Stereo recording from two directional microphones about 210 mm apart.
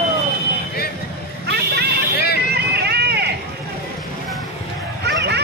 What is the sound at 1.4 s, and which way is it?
Vehicle, 50° right (ahead or behind).